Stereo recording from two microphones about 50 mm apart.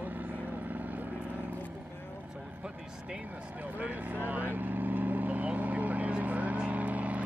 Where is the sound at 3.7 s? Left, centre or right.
Right.